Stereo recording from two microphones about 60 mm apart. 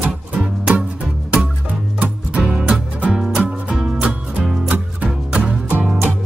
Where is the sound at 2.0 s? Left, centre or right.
Centre.